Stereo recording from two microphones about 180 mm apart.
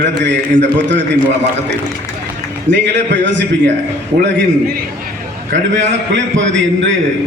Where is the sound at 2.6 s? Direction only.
80° right.